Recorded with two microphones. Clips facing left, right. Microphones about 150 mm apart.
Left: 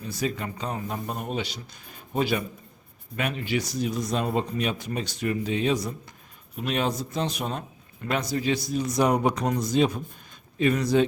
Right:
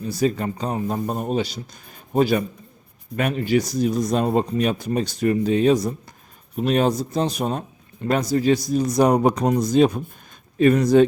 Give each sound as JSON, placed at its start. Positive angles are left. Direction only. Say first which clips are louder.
{"t": 0.1, "sound": "speech", "louder": "right 8 dB", "side_deg": -35}